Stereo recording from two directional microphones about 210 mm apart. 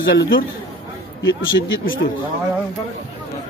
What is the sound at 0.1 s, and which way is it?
Speech, 65° left (ahead or behind).